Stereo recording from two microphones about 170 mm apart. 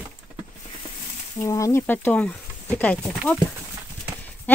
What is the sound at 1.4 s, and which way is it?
Speech, 15° left (ahead or behind).